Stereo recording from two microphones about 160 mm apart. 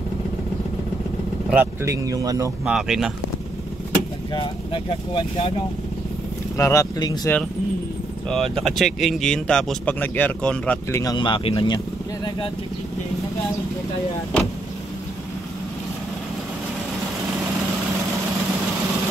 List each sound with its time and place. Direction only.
1.5 s speech: 15° right (ahead or behind)
2.6 s speech: 5° right (ahead or behind)
4.3 s speech: 30° left (ahead or behind)
6.5 s speech: 20° left (ahead or behind)
8.3 s speech: centre (ahead or behind)
11.0 s speech: 25° left (ahead or behind)